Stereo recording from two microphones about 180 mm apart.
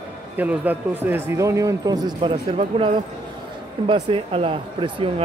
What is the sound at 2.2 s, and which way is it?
Speech, 30° right (ahead or behind).